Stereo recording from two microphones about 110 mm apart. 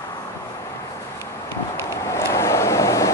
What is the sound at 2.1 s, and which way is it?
Vehicle, 25° left (ahead or behind).